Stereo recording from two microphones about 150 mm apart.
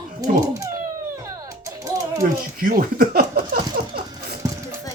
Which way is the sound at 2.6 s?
70° right (ahead or behind).